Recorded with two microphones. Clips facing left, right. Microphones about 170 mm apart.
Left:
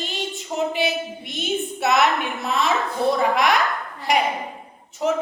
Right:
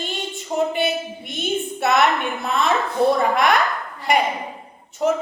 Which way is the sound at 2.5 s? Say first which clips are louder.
Right 1 dB; centre (ahead or behind).